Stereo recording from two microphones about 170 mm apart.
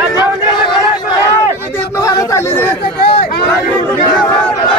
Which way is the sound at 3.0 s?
65° left (ahead or behind).